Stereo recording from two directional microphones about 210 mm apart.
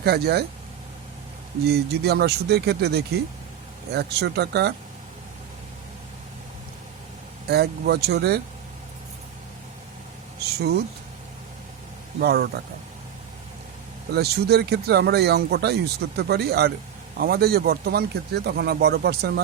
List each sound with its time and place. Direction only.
0.0 s speech: 50° right (ahead or behind)
1.6 s speech: 50° right (ahead or behind)
7.4 s speech: 50° right (ahead or behind)
12.2 s speech: 50° right (ahead or behind)
14.1 s speech: 50° right (ahead or behind)